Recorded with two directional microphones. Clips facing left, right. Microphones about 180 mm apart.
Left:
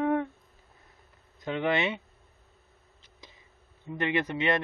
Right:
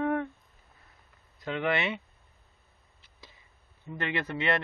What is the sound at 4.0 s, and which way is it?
Speech, 15° left (ahead or behind).